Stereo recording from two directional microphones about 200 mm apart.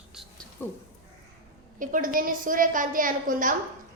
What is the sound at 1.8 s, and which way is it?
A woman's voice, 45° right (ahead or behind).